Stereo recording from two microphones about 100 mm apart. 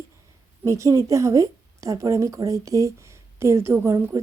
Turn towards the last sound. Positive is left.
turn(degrees=-25)  # may be behind; listen again after turning